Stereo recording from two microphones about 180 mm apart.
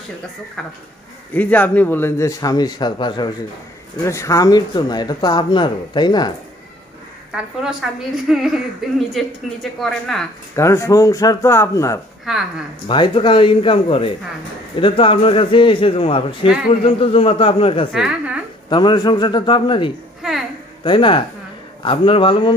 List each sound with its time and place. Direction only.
0.6 s a woman's voice: 5° left (ahead or behind); by 6.3 s 25° left (ahead or behind)
7.3 s a woman's voice: 5° right (ahead or behind)
10.5 s a man's voice: 15° left (ahead or behind)
12.3 s a woman's voice: 5° right (ahead or behind)
12.8 s a man's voice: 25° left (ahead or behind)
17.9 s a woman's voice: 5° right (ahead or behind)
18.7 s speech: 25° left (ahead or behind)
20.2 s a child's voice: centre (ahead or behind)
20.8 s speech: 25° left (ahead or behind)